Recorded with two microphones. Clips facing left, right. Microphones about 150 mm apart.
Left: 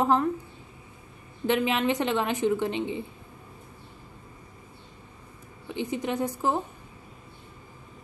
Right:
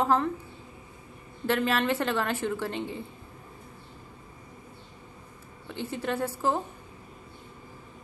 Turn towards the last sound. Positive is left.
turn(degrees=15)  # may be behind; listen again after turning